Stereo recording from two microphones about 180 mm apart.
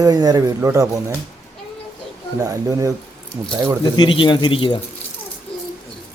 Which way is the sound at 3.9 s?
25° left (ahead or behind).